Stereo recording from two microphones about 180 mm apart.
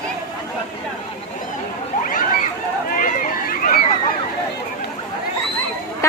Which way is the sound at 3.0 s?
50° left (ahead or behind).